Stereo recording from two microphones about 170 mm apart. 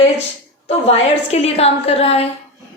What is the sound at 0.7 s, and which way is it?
A woman's voice, 35° left (ahead or behind).